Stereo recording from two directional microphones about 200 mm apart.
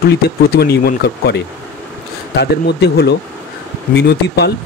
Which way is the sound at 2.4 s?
55° left (ahead or behind).